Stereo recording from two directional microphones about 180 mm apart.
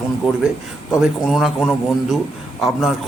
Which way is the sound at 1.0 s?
Centre (ahead or behind).